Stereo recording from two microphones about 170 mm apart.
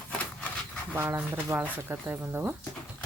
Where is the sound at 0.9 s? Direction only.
15° right (ahead or behind).